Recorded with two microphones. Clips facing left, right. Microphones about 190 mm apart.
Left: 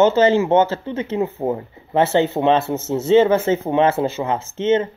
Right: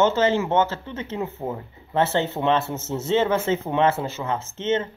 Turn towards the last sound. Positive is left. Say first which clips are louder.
# left 6 dB
turn(degrees=10)  # may be behind; listen again after turning